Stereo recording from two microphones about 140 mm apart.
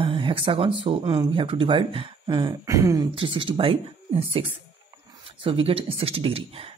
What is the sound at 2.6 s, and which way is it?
Speech, 25° right (ahead or behind).